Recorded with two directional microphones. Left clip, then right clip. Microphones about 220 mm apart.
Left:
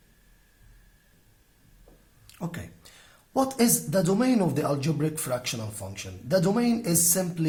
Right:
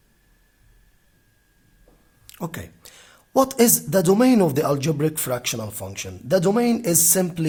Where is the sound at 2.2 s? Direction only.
50° right (ahead or behind).